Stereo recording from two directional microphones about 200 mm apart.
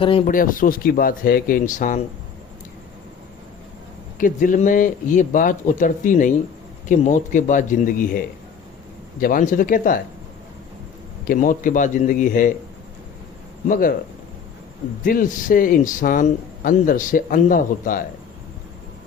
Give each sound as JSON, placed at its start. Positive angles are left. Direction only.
{"t": 0.0, "sound": "speech", "side_deg": 25}
{"t": 0.3, "sound": "speech", "side_deg": 45}
{"t": 4.2, "sound": "speech", "side_deg": 40}
{"t": 9.2, "sound": "speech", "side_deg": 45}
{"t": 11.3, "sound": "speech", "side_deg": 40}
{"t": 13.7, "sound": "speech", "side_deg": 45}
{"t": 15.0, "sound": "speech", "side_deg": 45}